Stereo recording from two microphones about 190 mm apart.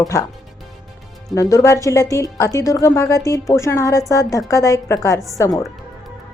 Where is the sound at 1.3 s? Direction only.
15° left (ahead or behind).